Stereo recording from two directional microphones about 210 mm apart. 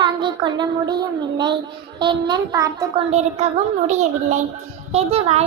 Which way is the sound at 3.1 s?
30° right (ahead or behind).